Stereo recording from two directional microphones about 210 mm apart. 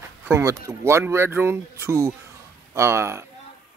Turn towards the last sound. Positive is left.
turn(degrees=-10)  # may be behind; listen again after turning